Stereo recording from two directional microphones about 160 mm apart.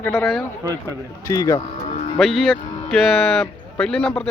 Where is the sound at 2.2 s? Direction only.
Centre (ahead or behind).